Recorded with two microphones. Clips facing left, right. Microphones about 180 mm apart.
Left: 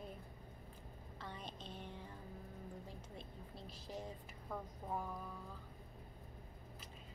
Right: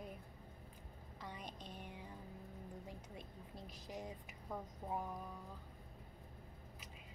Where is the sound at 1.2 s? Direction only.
15° right (ahead or behind).